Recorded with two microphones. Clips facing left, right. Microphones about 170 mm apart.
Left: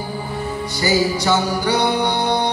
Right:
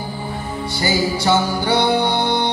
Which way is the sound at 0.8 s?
30° right (ahead or behind).